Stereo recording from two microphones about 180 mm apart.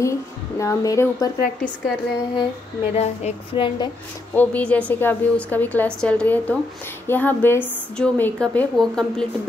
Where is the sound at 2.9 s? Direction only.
30° left (ahead or behind).